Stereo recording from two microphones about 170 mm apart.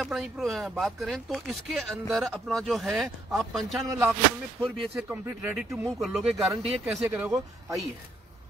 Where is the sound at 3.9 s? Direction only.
15° right (ahead or behind).